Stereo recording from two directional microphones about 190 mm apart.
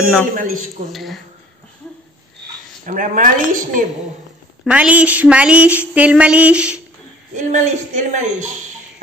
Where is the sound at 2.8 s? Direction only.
45° right (ahead or behind).